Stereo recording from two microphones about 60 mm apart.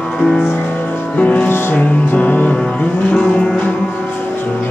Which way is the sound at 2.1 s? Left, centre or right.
Left.